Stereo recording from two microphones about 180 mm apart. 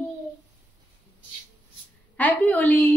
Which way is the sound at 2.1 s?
10° left (ahead or behind).